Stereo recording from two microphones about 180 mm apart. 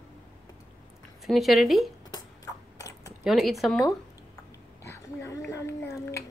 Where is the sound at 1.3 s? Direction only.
Centre (ahead or behind).